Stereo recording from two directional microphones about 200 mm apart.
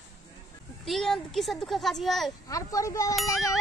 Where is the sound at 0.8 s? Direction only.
Centre (ahead or behind).